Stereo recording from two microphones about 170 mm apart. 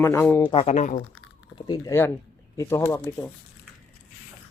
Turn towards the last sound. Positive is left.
turn(degrees=15)  # may be behind; listen again after turning